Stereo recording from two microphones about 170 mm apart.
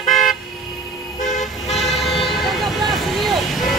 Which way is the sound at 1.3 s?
45° left (ahead or behind).